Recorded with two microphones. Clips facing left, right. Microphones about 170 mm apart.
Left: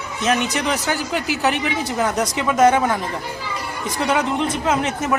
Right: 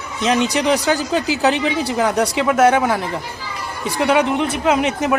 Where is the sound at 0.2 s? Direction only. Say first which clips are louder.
Right 3 dB; 15° right (ahead or behind).